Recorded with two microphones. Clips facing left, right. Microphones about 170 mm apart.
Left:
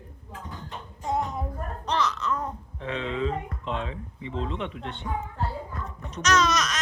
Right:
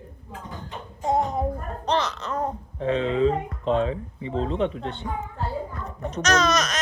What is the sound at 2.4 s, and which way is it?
Speech, 40° right (ahead or behind).